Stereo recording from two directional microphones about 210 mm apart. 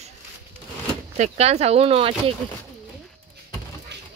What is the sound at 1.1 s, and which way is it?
Speech, 30° right (ahead or behind).